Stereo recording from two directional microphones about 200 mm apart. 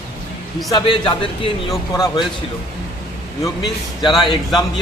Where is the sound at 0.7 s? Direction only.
25° left (ahead or behind).